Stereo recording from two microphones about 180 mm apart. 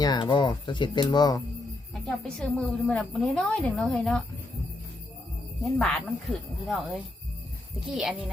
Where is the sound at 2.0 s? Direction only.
Centre (ahead or behind).